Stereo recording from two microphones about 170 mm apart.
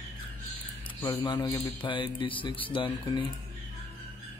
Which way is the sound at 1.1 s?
25° left (ahead or behind).